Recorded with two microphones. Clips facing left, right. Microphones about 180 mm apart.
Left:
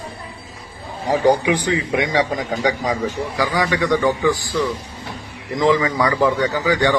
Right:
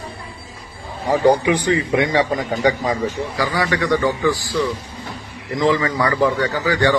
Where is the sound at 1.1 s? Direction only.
15° left (ahead or behind).